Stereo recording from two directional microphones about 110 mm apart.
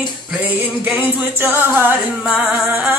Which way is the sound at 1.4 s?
20° right (ahead or behind).